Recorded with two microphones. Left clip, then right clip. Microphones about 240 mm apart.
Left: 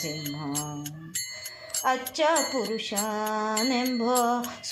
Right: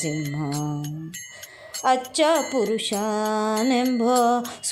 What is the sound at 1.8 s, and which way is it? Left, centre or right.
Music, right.